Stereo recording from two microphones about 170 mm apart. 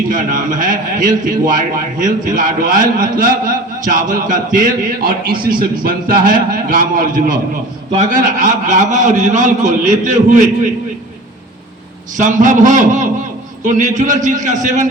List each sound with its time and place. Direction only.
0.1 s a man's voice: 50° right (ahead or behind)
12.1 s a man's voice: 50° right (ahead or behind)